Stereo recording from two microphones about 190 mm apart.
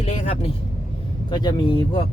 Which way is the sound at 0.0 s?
35° left (ahead or behind).